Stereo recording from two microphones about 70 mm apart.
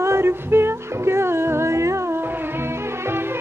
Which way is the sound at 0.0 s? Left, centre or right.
Right.